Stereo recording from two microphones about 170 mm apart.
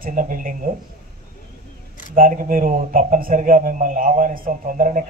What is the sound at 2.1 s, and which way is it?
A man's voice, 55° right (ahead or behind).